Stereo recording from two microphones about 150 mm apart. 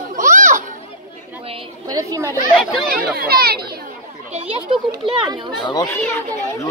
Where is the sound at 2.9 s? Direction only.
85° right.